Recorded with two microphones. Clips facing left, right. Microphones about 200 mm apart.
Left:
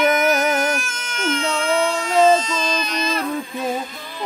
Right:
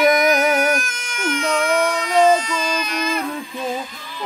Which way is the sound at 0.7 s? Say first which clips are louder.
Right 3 dB; 15° right (ahead or behind).